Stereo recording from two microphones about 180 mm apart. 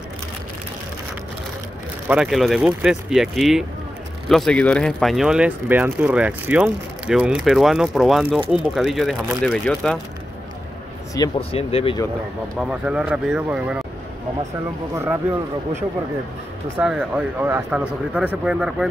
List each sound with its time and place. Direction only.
2.0 s speech: 5° right (ahead or behind)
11.1 s speech: 30° left (ahead or behind)
12.5 s speech: 5° right (ahead or behind)
16.7 s speech: 5° right (ahead or behind)